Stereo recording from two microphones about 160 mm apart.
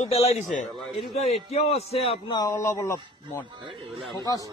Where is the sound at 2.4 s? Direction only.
20° left (ahead or behind).